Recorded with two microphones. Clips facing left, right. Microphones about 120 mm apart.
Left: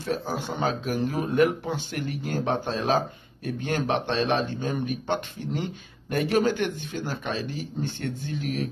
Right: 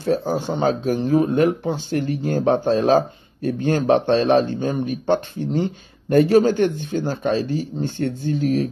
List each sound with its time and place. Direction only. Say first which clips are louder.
0.0 s speech: right 8 dB; 35° right (ahead or behind)